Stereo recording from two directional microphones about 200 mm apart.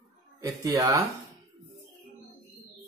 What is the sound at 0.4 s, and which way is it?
Speech, 15° right (ahead or behind).